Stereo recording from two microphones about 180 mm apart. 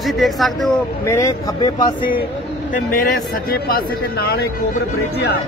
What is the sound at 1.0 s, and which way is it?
Speech, 15° left (ahead or behind).